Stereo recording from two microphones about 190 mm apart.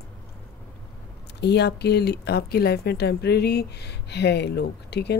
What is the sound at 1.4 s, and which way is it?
Speech, 60° left (ahead or behind).